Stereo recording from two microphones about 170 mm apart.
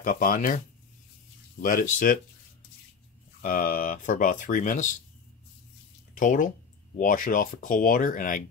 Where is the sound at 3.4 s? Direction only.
55° left (ahead or behind).